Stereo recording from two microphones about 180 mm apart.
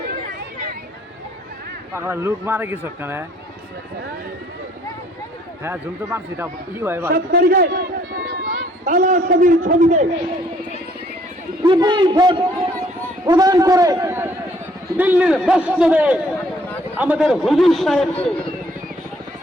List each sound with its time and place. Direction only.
2.0 s speech: 10° right (ahead or behind)
5.6 s speech: 10° right (ahead or behind)
7.1 s a man's voice: 55° right (ahead or behind); by 10.1 s 40° right (ahead or behind)
11.6 s a man's voice: 25° right (ahead or behind); by 18.4 s 5° left (ahead or behind)